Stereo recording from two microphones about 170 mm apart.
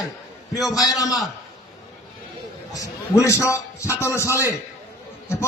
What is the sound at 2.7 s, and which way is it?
A man's voice, 20° left (ahead or behind).